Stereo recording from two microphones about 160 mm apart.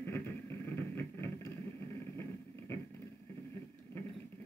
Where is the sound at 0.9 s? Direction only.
15° left (ahead or behind).